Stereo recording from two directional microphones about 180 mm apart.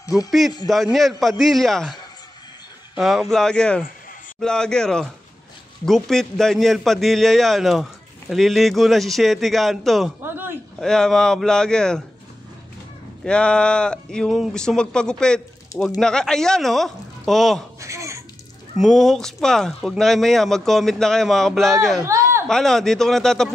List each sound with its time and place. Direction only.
0.9 s a man's voice: centre (ahead or behind)
3.0 s a man's voice: centre (ahead or behind)
10.2 s a man's voice: 10° right (ahead or behind)
10.8 s a man's voice: 5° left (ahead or behind)
13.2 s a man's voice: 5° left (ahead or behind)
17.7 s a sound: 15° right (ahead or behind)
18.8 s a man's voice: centre (ahead or behind)
22.0 s a sound: 15° right (ahead or behind)
22.5 s a man's voice: 5° left (ahead or behind)